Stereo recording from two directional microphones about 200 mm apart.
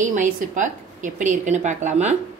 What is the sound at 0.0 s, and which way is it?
A woman's voice, 40° right (ahead or behind).